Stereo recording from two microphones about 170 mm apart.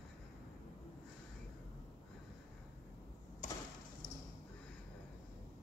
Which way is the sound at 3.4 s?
45° left (ahead or behind).